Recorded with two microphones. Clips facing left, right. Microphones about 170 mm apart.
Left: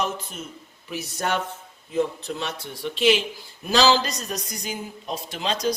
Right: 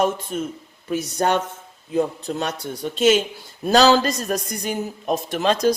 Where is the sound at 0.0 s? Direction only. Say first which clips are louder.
Right 7 dB; 50° right (ahead or behind).